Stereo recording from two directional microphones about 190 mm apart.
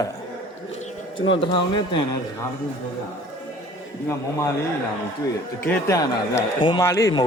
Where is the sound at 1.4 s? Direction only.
25° left (ahead or behind).